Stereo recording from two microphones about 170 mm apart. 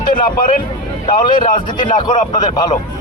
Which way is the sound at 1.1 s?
30° left (ahead or behind).